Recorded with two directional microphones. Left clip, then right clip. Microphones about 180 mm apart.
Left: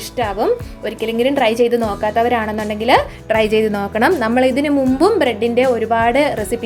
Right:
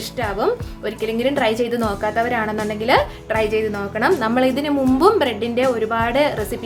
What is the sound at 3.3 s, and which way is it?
Speech, 35° left (ahead or behind).